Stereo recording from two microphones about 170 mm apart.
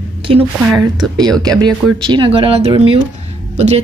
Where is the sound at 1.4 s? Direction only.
25° right (ahead or behind).